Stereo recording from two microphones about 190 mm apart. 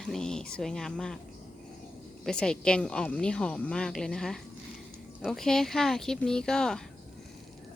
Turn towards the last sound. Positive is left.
turn(degrees=5)  # may be behind; listen again after turning